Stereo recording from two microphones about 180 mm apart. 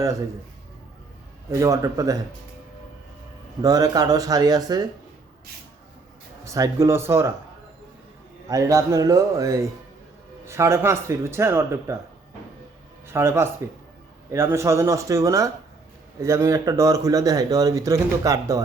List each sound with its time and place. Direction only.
1.5 s speech: 15° right (ahead or behind)
3.6 s speech: 20° right (ahead or behind)
6.4 s speech: 15° right (ahead or behind)
8.4 s speech: 20° right (ahead or behind)
13.1 s speech: 15° right (ahead or behind)